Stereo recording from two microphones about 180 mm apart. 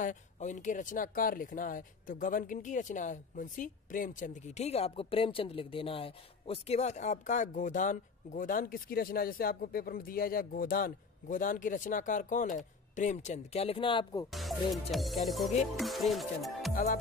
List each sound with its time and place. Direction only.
0.0 s speech: 45° left (ahead or behind); by 14.2 s 25° left (ahead or behind)
14.3 s music: centre (ahead or behind)
16.7 s speech: 50° left (ahead or behind)